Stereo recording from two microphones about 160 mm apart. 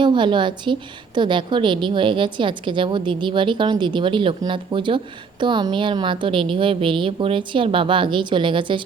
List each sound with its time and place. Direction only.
0.0 s a woman's voice: 30° right (ahead or behind)